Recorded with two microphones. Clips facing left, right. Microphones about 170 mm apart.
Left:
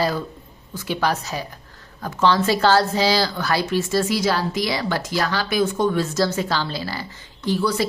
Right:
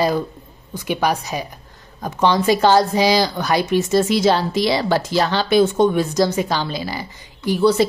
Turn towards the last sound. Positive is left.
turn(degrees=-25)  # may be behind; listen again after turning